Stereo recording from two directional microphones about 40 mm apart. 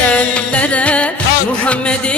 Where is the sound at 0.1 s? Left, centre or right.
Left.